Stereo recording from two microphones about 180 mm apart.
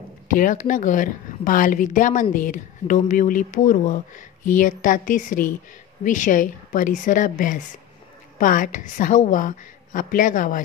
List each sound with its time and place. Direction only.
0.3 s speech: 50° left (ahead or behind)